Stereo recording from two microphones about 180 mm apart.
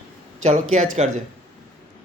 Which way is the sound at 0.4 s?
40° right (ahead or behind).